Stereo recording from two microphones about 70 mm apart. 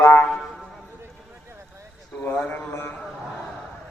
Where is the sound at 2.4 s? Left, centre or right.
Left.